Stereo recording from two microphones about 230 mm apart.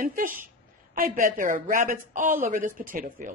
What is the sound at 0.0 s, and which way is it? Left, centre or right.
Speech, right.